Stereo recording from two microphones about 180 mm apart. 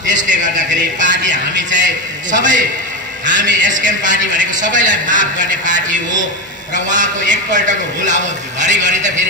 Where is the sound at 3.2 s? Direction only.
45° right (ahead or behind).